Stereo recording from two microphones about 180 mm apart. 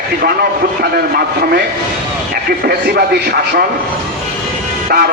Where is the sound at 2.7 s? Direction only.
60° right (ahead or behind).